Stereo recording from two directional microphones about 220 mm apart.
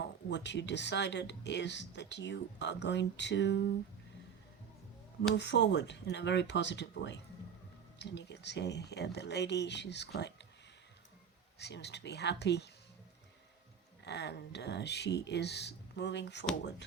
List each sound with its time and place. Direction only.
0.0 s speech: 50° left (ahead or behind)
5.3 s speech: 50° left (ahead or behind)
11.6 s speech: 50° left (ahead or behind)
14.0 s speech: 50° left (ahead or behind)